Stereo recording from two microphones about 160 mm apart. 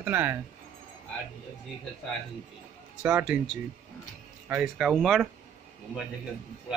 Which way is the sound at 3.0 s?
10° right (ahead or behind).